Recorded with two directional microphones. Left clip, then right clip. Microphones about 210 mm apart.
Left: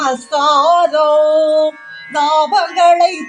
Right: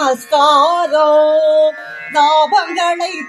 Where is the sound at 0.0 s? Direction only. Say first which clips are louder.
Right 2 dB; 15° right (ahead or behind).